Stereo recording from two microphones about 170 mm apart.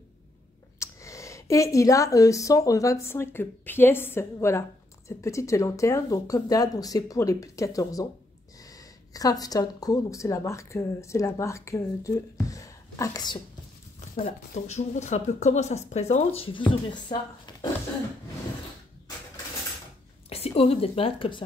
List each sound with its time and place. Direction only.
0.7 s a woman's voice: 20° left (ahead or behind)
14.2 s speech: 45° left (ahead or behind)
16.3 s speech: 30° left (ahead or behind)
20.2 s a woman's voice: 35° left (ahead or behind)